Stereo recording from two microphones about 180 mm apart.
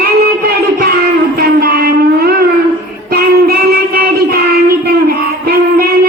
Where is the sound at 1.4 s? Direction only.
60° right (ahead or behind).